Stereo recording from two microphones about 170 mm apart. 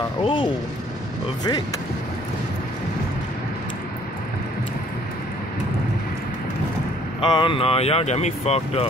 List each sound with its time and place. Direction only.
0.2 s speech: 30° left (ahead or behind)
7.2 s speech: 30° left (ahead or behind)